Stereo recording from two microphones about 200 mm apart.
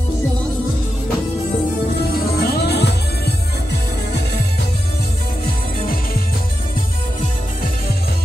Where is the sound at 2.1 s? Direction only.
50° left (ahead or behind).